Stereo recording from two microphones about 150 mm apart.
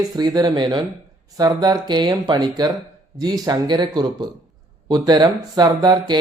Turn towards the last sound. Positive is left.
turn(degrees=-30)  # may be behind; listen again after turning